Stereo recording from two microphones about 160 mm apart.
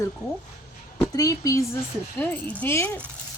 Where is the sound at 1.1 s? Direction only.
20° left (ahead or behind).